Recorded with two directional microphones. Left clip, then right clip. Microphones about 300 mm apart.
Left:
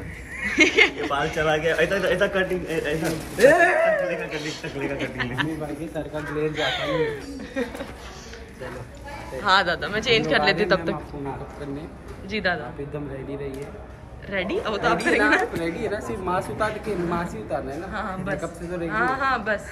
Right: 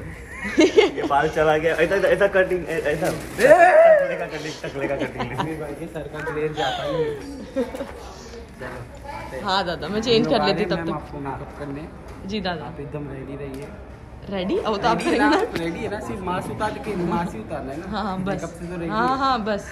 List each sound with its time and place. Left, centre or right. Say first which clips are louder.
0.4 s speech: right 1 dB; centre
1.4 s a man's voice: right 3 dB; right
3.0 s a man's voice: left 4 dB; centre
6.7 s a man's voice: even; centre
9.4 s a man's voice: left 4 dB; centre
12.3 s a woman's voice: left 3 dB; centre
14.3 s a woman's voice: right 2 dB; centre
17.9 s a man's voice: right 3 dB; centre